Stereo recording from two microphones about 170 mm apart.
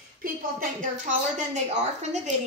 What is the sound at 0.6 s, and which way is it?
Speech, 50° right (ahead or behind).